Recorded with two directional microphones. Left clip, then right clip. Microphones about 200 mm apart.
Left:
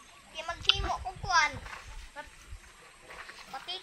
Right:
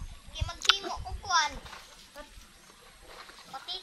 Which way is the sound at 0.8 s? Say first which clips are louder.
Left 3 dB; 35° left (ahead or behind).